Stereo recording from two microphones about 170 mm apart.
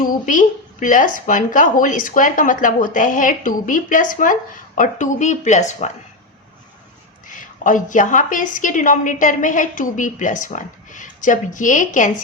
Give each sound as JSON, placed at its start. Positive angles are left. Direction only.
{"t": 0.0, "sound": "a woman's voice", "side_deg": 50}
{"t": 7.3, "sound": "a woman's voice", "side_deg": 50}